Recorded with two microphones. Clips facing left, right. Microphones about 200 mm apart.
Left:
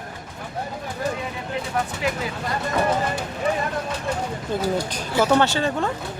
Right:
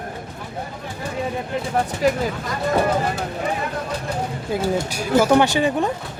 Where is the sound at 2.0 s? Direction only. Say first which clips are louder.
Right 9 dB; 40° right (ahead or behind).